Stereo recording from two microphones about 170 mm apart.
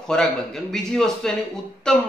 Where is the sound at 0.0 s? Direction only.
5° left (ahead or behind).